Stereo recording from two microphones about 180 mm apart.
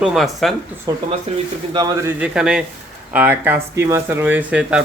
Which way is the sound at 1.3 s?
35° right (ahead or behind).